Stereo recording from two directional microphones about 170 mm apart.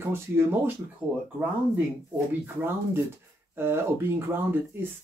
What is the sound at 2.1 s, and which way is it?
Speech, 10° right (ahead or behind).